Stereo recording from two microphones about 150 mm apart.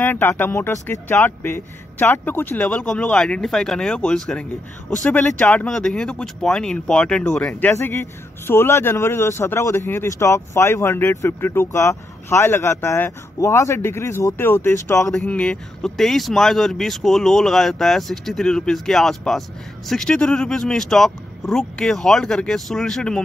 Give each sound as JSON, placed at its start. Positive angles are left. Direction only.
{"t": 0.0, "sound": "a man's voice", "side_deg": 15}
{"t": 15.0, "sound": "speech", "side_deg": 5}